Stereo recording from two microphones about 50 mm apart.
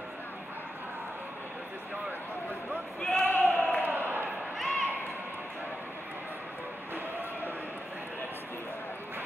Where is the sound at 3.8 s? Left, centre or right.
Right.